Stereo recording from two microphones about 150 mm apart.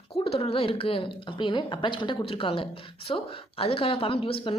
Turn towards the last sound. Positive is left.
turn(degrees=40)  # may be behind; listen again after turning